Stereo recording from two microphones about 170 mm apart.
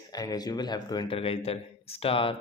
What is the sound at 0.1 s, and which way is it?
Speech, 20° left (ahead or behind).